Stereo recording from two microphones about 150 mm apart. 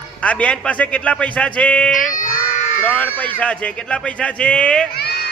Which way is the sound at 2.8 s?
10° left (ahead or behind).